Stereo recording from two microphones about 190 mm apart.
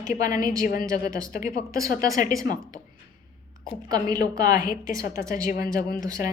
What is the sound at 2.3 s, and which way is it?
Speech, 20° right (ahead or behind).